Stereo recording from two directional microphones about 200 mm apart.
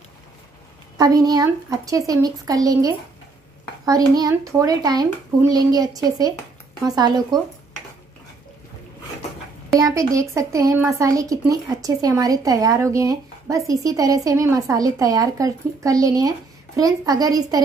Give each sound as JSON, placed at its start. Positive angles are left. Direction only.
{"t": 0.9, "sound": "a child's voice", "side_deg": -20}
{"t": 9.8, "sound": "speech", "side_deg": -15}